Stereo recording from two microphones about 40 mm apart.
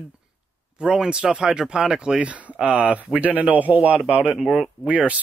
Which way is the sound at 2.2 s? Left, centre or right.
Right.